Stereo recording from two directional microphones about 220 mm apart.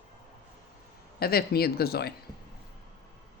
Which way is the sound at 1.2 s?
45° left (ahead or behind).